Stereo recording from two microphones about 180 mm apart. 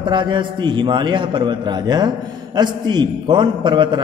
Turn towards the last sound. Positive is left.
turn(degrees=-25)  # may be behind; listen again after turning